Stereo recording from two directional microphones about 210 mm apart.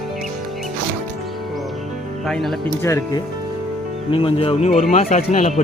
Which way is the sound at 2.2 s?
Centre (ahead or behind).